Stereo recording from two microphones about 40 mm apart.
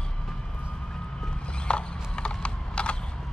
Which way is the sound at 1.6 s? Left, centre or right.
Left.